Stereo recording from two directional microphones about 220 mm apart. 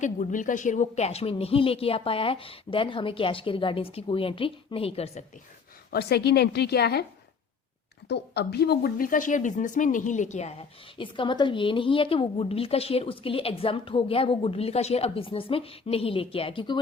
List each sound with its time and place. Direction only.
0.0 s speech: 35° left (ahead or behind)
5.9 s a woman's voice: 45° left (ahead or behind)
8.0 s speech: 50° left (ahead or behind); by 16.8 s 20° left (ahead or behind)